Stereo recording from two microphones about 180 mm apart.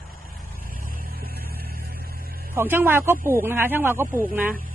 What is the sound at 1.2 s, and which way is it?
Vehicle, 60° right (ahead or behind).